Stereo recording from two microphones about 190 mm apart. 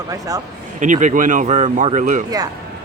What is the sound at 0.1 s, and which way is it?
Speech, 20° right (ahead or behind).